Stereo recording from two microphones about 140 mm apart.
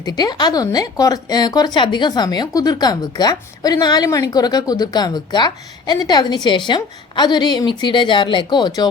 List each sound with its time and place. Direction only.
0.0 s speech: 25° left (ahead or behind)